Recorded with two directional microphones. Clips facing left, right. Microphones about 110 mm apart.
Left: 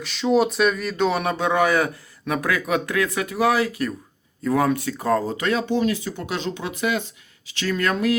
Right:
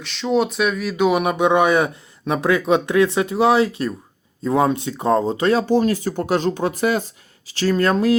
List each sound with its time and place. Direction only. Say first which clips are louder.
0.0 s speech: even; centre (ahead or behind); by 8.1 s 35° right (ahead or behind)